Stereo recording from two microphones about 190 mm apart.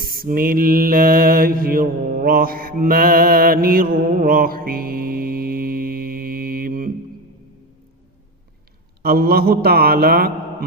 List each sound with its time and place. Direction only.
0.0 s mantra: 50° right (ahead or behind)
9.0 s a man's voice: 55° right (ahead or behind)